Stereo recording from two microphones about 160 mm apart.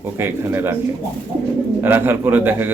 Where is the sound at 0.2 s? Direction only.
15° right (ahead or behind).